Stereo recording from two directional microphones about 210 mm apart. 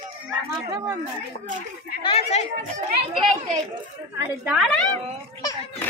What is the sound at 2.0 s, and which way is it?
Speech, 30° left (ahead or behind).